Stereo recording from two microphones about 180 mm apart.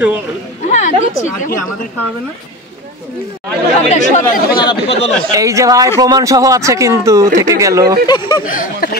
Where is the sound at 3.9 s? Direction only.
40° left (ahead or behind).